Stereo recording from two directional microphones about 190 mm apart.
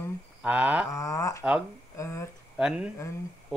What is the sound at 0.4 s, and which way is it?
Speech, 5° right (ahead or behind).